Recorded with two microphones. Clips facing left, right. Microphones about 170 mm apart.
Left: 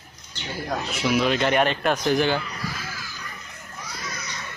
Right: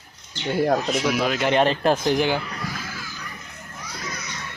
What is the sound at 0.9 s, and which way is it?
Speech, centre (ahead or behind).